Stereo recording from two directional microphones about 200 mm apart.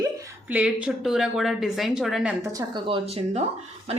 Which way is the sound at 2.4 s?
20° right (ahead or behind).